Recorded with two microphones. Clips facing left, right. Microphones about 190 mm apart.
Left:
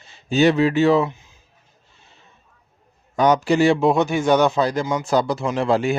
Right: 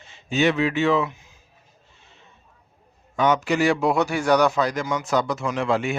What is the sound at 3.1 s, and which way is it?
A man's voice, 40° left (ahead or behind).